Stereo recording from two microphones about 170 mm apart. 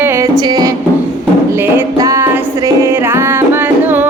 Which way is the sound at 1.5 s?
15° right (ahead or behind).